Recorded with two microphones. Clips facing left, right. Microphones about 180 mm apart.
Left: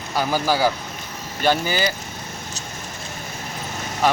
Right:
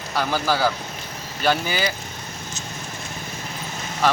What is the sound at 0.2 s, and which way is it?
Speech, 5° left (ahead or behind).